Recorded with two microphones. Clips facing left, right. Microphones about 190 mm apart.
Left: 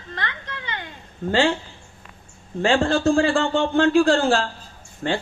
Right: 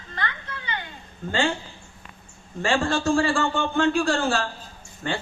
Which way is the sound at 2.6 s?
55° left (ahead or behind).